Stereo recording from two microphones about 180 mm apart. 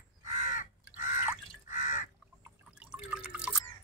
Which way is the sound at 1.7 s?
45° left (ahead or behind).